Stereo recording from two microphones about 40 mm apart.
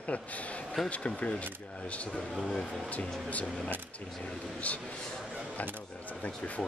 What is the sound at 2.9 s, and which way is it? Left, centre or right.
Speech, left.